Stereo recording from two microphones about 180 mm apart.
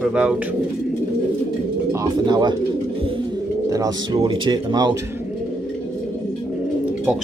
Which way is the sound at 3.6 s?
20° right (ahead or behind).